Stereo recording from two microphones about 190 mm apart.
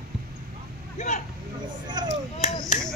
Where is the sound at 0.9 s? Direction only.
40° left (ahead or behind).